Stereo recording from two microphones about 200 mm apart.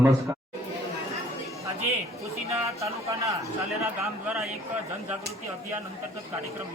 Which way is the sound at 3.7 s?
Centre (ahead or behind).